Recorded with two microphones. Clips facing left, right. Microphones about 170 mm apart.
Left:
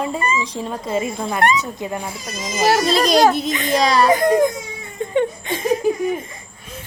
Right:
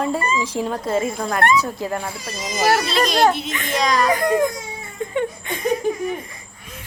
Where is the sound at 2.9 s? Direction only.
40° left (ahead or behind).